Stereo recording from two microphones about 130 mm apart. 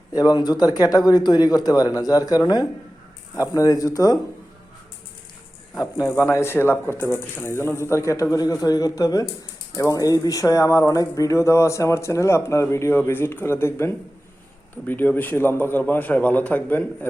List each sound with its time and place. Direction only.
0.2 s speech: 30° left (ahead or behind)
5.7 s a man's voice: 25° left (ahead or behind)